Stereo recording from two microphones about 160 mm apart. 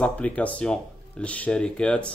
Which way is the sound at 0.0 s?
10° left (ahead or behind).